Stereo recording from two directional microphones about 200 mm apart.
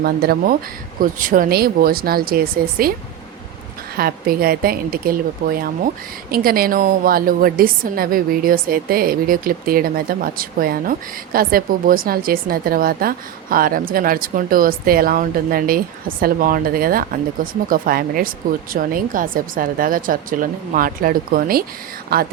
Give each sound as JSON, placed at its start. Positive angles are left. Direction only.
{"t": 0.0, "sound": "a woman's voice", "side_deg": -50}
{"t": 3.9, "sound": "a woman's voice", "side_deg": -50}